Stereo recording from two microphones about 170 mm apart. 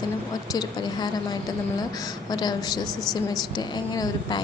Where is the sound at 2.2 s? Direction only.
25° left (ahead or behind).